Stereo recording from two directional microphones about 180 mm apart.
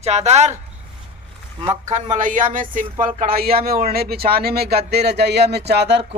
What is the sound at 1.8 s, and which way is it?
Speech, 40° right (ahead or behind).